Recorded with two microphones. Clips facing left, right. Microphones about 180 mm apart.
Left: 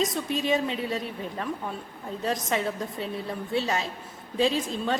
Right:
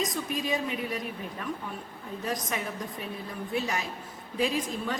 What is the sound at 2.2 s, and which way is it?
A woman's voice, 25° left (ahead or behind).